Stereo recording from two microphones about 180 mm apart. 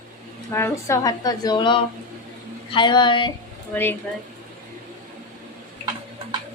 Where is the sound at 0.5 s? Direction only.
15° left (ahead or behind).